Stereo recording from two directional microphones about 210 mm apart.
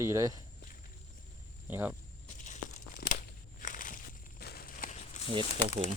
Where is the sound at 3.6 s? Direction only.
40° left (ahead or behind).